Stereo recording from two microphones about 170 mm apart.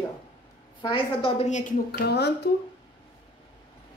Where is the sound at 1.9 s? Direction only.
75° left (ahead or behind).